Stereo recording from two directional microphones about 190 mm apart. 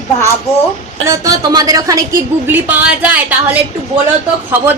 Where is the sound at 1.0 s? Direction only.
20° right (ahead or behind).